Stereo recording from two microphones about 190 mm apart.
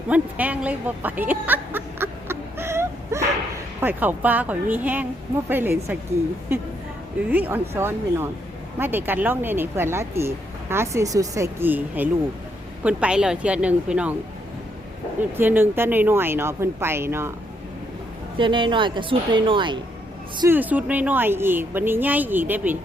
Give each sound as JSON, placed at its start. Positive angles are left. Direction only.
{"t": 0.1, "sound": "a sound", "side_deg": -10}
{"t": 3.8, "sound": "speech", "side_deg": -10}
{"t": 7.3, "sound": "speech", "side_deg": -10}
{"t": 15.4, "sound": "speech", "side_deg": -10}
{"t": 18.3, "sound": "speech", "side_deg": -25}
{"t": 20.5, "sound": "speech", "side_deg": -10}